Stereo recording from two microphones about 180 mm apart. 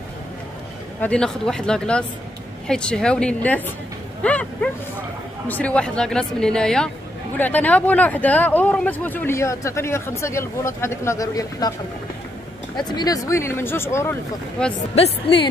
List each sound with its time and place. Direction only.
1.0 s a woman's voice: 5° left (ahead or behind)
4.2 s dog: 5° left (ahead or behind)
5.5 s a woman's voice: 5° left (ahead or behind)
12.7 s a woman's voice: 25° left (ahead or behind); by 14.7 s 5° left (ahead or behind)
15.0 s speech: 30° left (ahead or behind)